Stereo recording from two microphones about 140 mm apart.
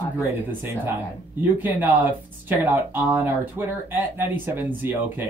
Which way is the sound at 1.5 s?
15° right (ahead or behind).